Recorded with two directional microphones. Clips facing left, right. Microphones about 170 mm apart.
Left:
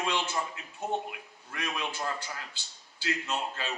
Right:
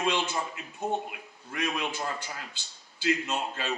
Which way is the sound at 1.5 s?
15° right (ahead or behind).